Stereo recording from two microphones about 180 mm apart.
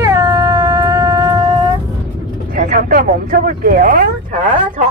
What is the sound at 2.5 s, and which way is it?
Speech, 50° right (ahead or behind).